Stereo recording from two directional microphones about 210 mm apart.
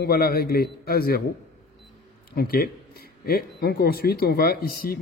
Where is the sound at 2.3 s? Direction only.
45° left (ahead or behind).